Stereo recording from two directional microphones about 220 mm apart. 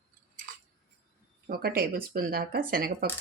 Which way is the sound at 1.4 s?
45° right (ahead or behind).